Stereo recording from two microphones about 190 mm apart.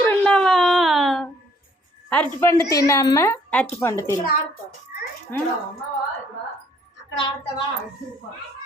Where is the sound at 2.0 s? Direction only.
10° left (ahead or behind).